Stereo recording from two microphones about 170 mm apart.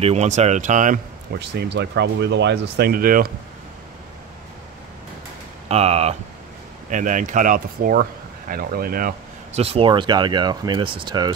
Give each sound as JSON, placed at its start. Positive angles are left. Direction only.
{"t": 0.0, "sound": "speech", "side_deg": -40}
{"t": 1.4, "sound": "speech", "side_deg": -90}
{"t": 5.7, "sound": "speech", "side_deg": -35}
{"t": 6.9, "sound": "speech", "side_deg": -50}
{"t": 9.6, "sound": "speech", "side_deg": -35}